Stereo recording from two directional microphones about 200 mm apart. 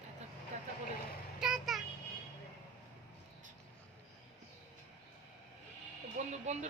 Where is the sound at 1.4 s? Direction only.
Centre (ahead or behind).